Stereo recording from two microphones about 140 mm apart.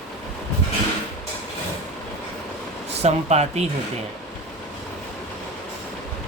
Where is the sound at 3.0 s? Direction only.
50° right (ahead or behind).